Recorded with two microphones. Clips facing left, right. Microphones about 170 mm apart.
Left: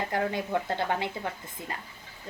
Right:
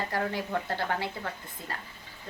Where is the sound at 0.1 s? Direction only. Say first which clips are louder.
Left 2 dB; 20° left (ahead or behind).